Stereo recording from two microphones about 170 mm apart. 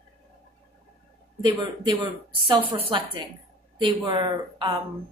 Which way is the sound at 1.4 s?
25° right (ahead or behind).